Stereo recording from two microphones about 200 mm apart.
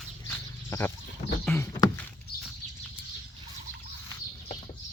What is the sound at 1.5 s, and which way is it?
Rowboat, 10° left (ahead or behind).